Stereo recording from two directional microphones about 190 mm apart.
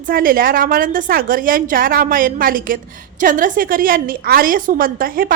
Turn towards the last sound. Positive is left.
turn(degrees=-50)  # may be behind; listen again after turning